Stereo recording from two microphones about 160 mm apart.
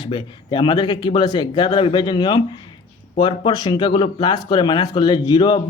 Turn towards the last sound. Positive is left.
turn(degrees=25)  # may be behind; listen again after turning